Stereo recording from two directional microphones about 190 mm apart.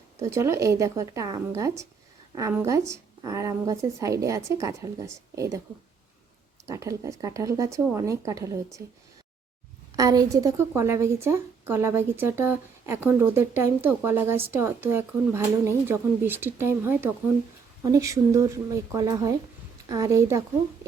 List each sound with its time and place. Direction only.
0.2 s a woman's voice: 15° right (ahead or behind)
6.7 s a woman's voice: 15° right (ahead or behind)
9.9 s a woman's voice: 20° right (ahead or behind)